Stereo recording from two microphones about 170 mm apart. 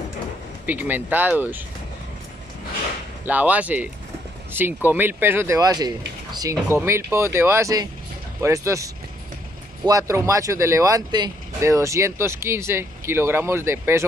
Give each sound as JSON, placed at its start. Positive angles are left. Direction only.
{"t": 0.7, "sound": "speech", "side_deg": -10}
{"t": 3.3, "sound": "speech", "side_deg": -10}